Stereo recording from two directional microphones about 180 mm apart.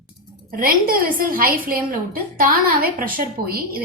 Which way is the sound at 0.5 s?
55° right (ahead or behind).